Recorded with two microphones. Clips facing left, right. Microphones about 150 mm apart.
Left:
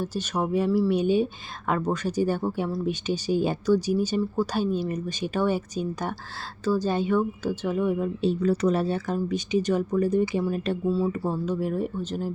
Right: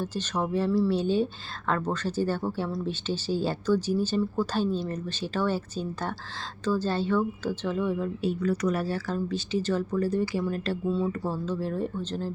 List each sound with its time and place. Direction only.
0.0 s speech: 10° left (ahead or behind)
8.2 s speech: 25° left (ahead or behind)
10.8 s speech: 5° left (ahead or behind)